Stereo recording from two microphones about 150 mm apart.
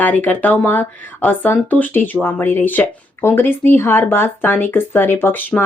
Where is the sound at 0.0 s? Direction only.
10° left (ahead or behind).